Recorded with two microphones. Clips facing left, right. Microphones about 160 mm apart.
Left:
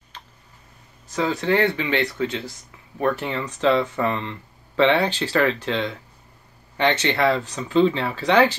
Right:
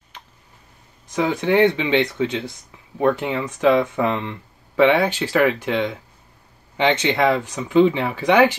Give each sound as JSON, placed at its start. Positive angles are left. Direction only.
{"t": 1.1, "sound": "speech", "side_deg": -15}